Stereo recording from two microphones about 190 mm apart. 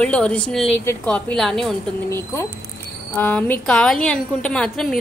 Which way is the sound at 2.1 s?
15° left (ahead or behind).